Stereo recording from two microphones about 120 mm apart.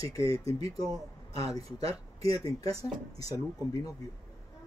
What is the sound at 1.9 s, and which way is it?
Speech, 55° right (ahead or behind).